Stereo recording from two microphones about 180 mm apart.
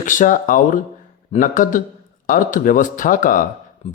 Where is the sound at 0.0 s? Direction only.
45° left (ahead or behind).